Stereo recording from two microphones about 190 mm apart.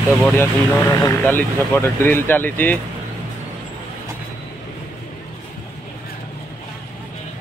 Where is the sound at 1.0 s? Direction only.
10° left (ahead or behind).